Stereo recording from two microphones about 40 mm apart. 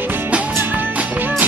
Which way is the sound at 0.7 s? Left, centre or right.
Right.